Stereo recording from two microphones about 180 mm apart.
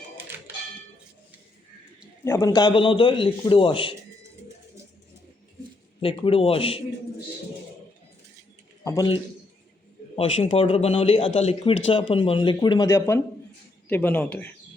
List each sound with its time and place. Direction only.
2.2 s a man's voice: 15° left (ahead or behind)
6.0 s speech: 30° left (ahead or behind)
8.8 s a sound: 15° left (ahead or behind)
10.2 s a man's voice: 35° left (ahead or behind); by 14.5 s 10° left (ahead or behind)